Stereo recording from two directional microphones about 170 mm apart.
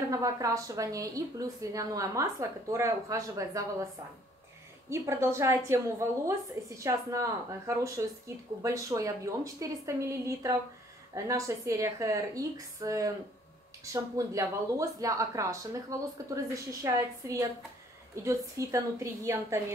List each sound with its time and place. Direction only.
0.1 s a woman's voice: 20° right (ahead or behind)